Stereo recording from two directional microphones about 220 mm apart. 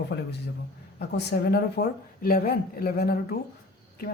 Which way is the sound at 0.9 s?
45° left (ahead or behind).